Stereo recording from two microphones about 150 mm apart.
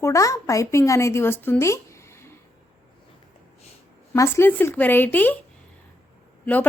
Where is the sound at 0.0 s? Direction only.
20° left (ahead or behind).